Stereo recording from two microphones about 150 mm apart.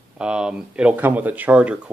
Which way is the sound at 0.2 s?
5° right (ahead or behind).